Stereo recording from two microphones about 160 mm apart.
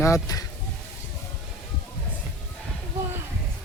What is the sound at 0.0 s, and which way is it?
Speech, 20° left (ahead or behind).